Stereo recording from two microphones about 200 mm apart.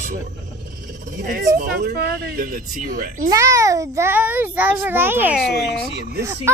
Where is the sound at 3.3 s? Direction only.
15° right (ahead or behind); by 5.9 s centre (ahead or behind).